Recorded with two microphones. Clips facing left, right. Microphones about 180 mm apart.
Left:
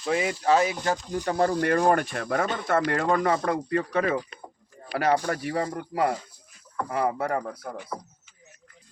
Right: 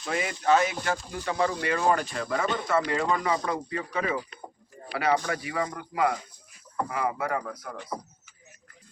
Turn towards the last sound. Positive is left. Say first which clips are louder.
# left 2 dB
turn(degrees=30)  # may be behind; listen again after turning